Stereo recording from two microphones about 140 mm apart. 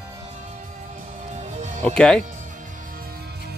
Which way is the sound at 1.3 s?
55° right (ahead or behind).